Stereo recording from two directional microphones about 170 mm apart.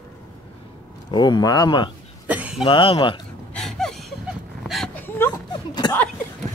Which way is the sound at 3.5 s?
5° left (ahead or behind).